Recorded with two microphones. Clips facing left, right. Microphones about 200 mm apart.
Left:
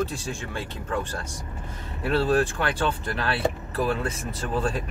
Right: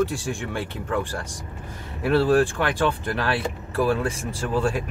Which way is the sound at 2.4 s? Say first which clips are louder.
Right 3 dB; 15° right (ahead or behind).